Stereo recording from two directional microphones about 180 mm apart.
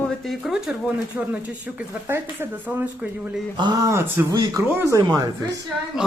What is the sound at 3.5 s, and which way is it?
Speech, 25° right (ahead or behind).